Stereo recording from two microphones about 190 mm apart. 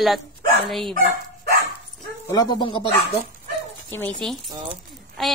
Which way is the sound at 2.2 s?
25° left (ahead or behind).